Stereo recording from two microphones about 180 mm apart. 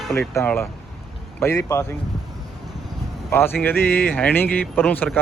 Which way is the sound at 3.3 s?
10° left (ahead or behind).